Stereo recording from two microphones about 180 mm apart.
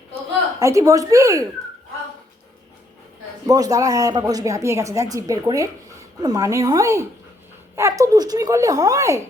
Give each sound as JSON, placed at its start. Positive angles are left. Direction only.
{"t": 0.6, "sound": "speech", "side_deg": -15}
{"t": 3.4, "sound": "speech", "side_deg": -20}